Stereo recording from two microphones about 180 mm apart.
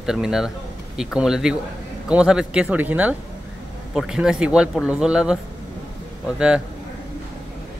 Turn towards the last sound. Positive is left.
turn(degrees=-5)  # may be behind; listen again after turning